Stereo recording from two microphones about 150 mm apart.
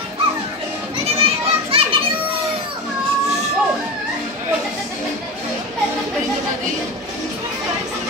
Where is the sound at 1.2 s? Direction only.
40° right (ahead or behind).